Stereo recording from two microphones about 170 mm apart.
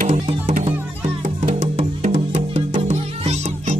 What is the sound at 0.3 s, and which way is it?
Music, 45° right (ahead or behind).